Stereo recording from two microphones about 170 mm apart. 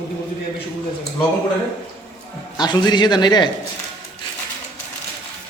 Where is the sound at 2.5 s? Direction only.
25° left (ahead or behind).